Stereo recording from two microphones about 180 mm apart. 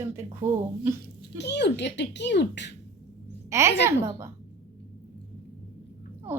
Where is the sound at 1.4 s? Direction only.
70° left (ahead or behind).